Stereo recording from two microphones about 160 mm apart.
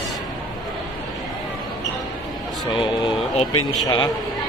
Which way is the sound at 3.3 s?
45° left (ahead or behind).